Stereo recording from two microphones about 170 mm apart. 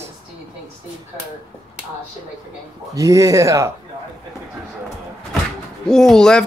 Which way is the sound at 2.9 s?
20° right (ahead or behind).